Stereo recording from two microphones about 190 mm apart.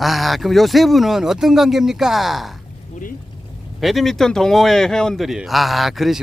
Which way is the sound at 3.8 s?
Centre (ahead or behind).